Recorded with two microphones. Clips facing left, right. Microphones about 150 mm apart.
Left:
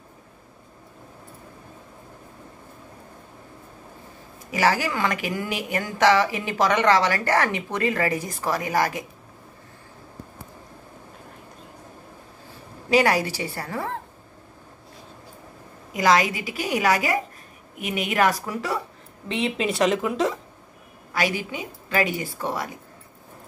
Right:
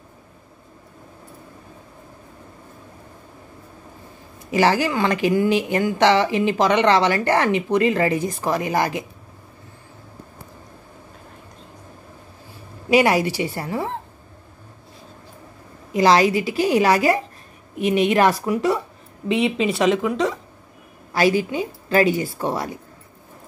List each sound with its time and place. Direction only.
4.5 s speech: 25° right (ahead or behind)
12.9 s a woman's voice: 15° right (ahead or behind)
15.9 s a woman's voice: 30° right (ahead or behind); by 19.5 s 10° right (ahead or behind)
19.5 s speech: centre (ahead or behind)
21.1 s a woman's voice: 35° right (ahead or behind)